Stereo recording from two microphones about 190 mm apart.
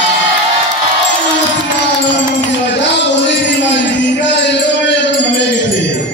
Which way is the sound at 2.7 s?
70° left (ahead or behind).